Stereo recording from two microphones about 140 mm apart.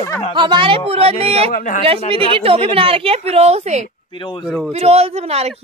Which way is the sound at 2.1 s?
40° right (ahead or behind).